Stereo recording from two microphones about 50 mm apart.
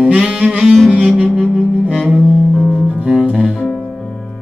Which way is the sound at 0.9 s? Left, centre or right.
Right.